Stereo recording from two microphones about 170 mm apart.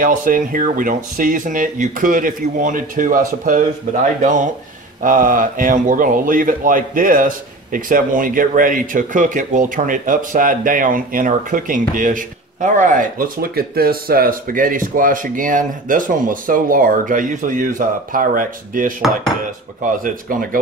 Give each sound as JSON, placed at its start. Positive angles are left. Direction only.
{"t": 0.0, "sound": "speech", "side_deg": -50}
{"t": 20.0, "sound": "speech", "side_deg": -55}